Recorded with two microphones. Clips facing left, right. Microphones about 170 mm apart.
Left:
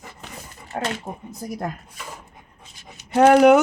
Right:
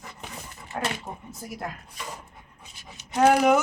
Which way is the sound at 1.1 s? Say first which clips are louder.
Left 6 dB; 35° left (ahead or behind).